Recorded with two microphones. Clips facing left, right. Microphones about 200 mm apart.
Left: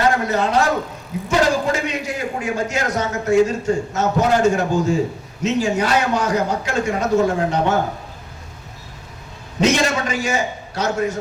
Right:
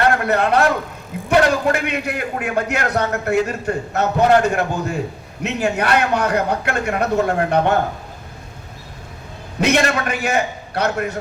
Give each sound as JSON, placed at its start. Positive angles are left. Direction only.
{"t": 0.0, "sound": "a man's voice", "side_deg": -60}
{"t": 9.6, "sound": "a man's voice", "side_deg": -60}